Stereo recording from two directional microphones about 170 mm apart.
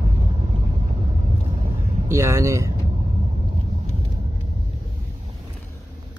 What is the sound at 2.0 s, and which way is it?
Speech, 15° right (ahead or behind).